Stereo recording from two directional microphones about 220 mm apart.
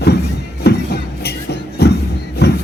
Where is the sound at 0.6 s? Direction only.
45° left (ahead or behind).